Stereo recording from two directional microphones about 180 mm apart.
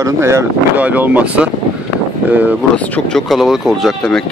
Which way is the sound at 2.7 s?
10° left (ahead or behind).